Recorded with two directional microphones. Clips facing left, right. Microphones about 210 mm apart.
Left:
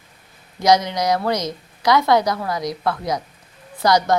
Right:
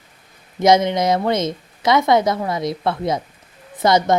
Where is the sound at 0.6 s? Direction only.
25° right (ahead or behind).